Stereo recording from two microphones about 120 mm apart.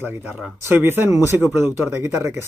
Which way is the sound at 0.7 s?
15° right (ahead or behind).